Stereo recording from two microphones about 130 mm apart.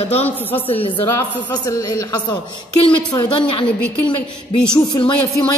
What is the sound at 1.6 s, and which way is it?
A man's voice, 25° left (ahead or behind).